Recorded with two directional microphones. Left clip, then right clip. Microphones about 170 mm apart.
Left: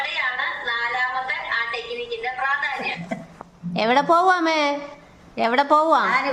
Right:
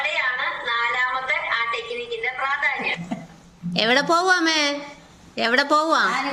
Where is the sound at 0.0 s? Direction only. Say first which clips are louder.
Right 1 dB; 5° right (ahead or behind).